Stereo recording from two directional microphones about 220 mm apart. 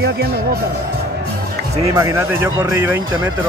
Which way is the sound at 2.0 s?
15° right (ahead or behind).